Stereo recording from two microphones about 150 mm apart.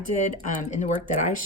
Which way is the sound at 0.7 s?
55° left (ahead or behind).